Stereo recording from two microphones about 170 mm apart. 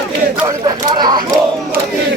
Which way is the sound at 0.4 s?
25° right (ahead or behind).